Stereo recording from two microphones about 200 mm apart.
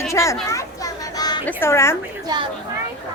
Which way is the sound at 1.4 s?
10° left (ahead or behind).